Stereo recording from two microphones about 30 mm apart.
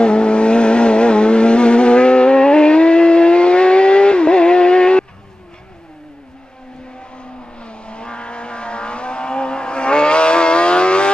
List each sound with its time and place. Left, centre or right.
0.0 s vehicle: left
7.6 s vehicle: left